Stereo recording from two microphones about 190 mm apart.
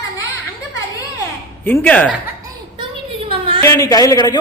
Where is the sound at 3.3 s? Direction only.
30° right (ahead or behind).